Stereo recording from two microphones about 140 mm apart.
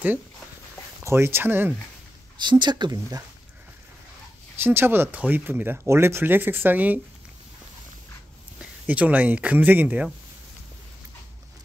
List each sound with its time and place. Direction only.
1.0 s speech: 15° right (ahead or behind)
2.4 s speech: 35° right (ahead or behind)
4.6 s speech: 15° right (ahead or behind)
8.8 s speech: 10° right (ahead or behind)